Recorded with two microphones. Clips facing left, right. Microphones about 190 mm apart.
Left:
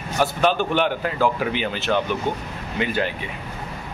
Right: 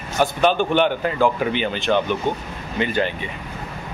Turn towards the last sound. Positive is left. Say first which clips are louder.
# right 2 dB
turn(degrees=5)  # may be behind; listen again after turning